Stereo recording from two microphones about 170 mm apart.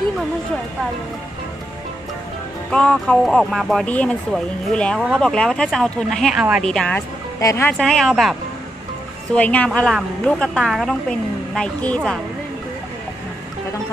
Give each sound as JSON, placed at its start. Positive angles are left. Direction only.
{"t": 2.7, "sound": "a woman's voice", "side_deg": 5}
{"t": 7.3, "sound": "a woman's voice", "side_deg": 15}
{"t": 7.7, "sound": "a woman's voice", "side_deg": 5}